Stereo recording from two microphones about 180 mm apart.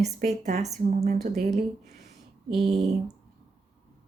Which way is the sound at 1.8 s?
40° right (ahead or behind).